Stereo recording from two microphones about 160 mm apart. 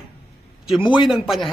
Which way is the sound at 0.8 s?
30° left (ahead or behind).